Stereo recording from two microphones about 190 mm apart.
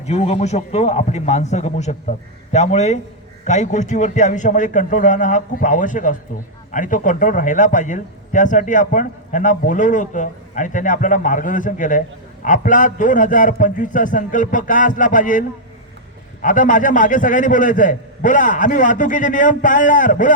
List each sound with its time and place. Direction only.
0.0 s a man's voice: 35° left (ahead or behind)